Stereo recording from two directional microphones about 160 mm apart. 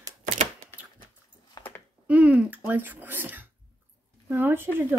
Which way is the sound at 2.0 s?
10° right (ahead or behind).